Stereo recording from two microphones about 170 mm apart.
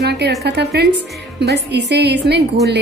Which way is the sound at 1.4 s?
85° right.